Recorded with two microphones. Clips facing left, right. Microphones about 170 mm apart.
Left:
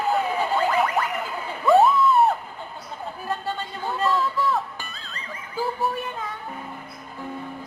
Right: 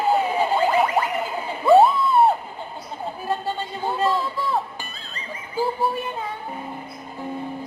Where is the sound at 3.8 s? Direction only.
30° right (ahead or behind).